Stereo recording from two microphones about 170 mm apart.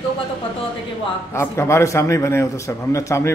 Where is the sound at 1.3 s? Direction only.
15° left (ahead or behind).